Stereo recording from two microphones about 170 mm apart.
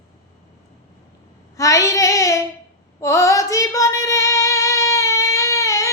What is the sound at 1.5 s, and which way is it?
Child singing, 20° left (ahead or behind).